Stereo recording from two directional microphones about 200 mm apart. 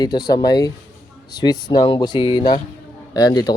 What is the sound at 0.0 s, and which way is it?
Speech, 20° left (ahead or behind).